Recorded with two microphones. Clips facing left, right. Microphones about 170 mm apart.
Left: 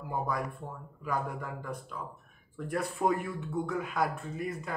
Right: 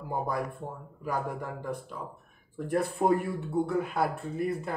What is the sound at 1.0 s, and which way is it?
Speech, 35° right (ahead or behind).